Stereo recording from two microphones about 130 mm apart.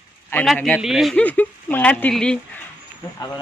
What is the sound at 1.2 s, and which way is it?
Speech, 10° left (ahead or behind).